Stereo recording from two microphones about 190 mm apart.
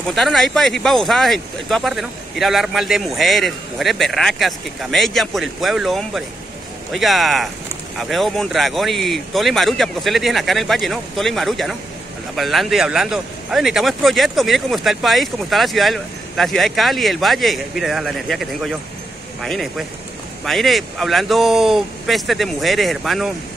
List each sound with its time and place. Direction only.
0.1 s a man's voice: centre (ahead or behind)